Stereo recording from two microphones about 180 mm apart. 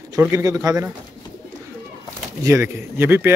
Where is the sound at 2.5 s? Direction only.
15° right (ahead or behind).